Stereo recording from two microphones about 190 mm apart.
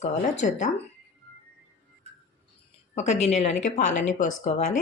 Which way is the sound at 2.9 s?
35° left (ahead or behind).